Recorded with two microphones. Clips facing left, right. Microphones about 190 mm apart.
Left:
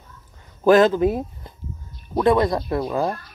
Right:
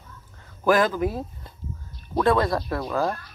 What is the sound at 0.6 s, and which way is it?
Speech, 25° left (ahead or behind).